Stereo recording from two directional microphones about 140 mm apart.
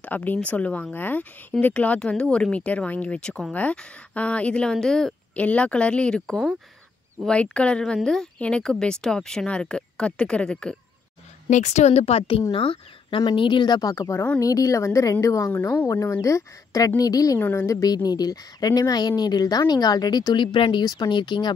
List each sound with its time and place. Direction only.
0.0 s speech: 10° left (ahead or behind)
11.4 s a woman's voice: 55° left (ahead or behind); by 15.9 s 10° left (ahead or behind)
15.9 s a woman's voice: 20° left (ahead or behind)